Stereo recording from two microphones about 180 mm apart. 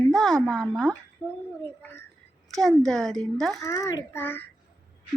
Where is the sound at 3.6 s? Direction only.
20° left (ahead or behind).